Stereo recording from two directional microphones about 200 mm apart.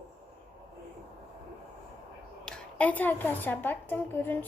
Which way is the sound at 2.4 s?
5° left (ahead or behind).